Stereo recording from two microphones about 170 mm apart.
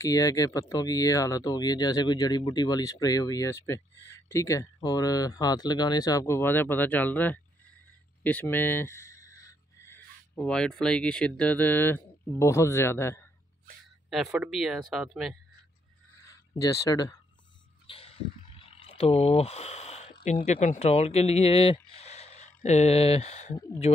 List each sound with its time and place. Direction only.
0.0 s speech: 20° left (ahead or behind)
8.2 s a sound: 10° left (ahead or behind)
10.4 s speech: 5° left (ahead or behind)
14.1 s speech: centre (ahead or behind)
16.3 s speech: 20° left (ahead or behind)
17.8 s a sound: 35° left (ahead or behind)
20.2 s speech: 40° left (ahead or behind)